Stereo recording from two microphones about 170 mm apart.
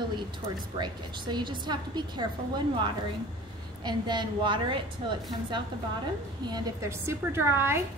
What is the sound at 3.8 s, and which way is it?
A woman's voice, 25° right (ahead or behind).